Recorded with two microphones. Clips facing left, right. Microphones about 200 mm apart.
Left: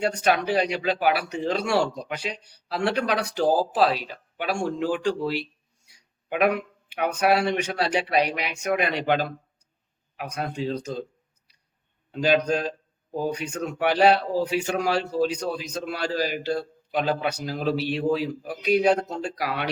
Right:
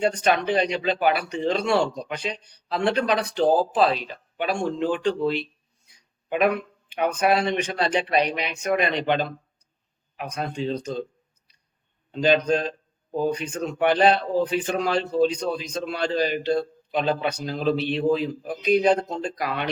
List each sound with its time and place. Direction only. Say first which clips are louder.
0.0 s speech: right 1 dB; 10° left (ahead or behind)
12.1 s speech: right 2 dB; 10° left (ahead or behind)